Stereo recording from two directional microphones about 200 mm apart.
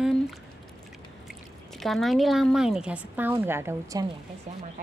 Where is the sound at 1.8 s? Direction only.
Centre (ahead or behind).